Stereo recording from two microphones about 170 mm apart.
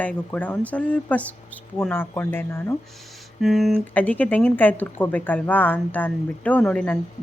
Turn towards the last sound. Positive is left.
turn(degrees=5)  # may be behind; listen again after turning